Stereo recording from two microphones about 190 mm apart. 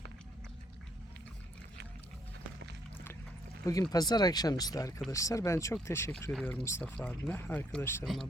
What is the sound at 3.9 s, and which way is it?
Speech, 20° left (ahead or behind).